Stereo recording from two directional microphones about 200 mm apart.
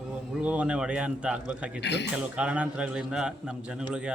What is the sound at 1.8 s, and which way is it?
Speech, 60° left (ahead or behind).